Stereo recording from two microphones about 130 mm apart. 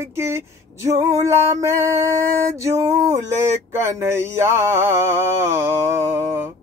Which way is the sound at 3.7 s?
20° right (ahead or behind).